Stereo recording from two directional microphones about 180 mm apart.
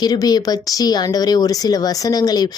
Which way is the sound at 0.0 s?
20° left (ahead or behind).